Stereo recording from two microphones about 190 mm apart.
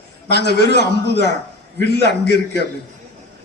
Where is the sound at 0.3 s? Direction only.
60° left (ahead or behind).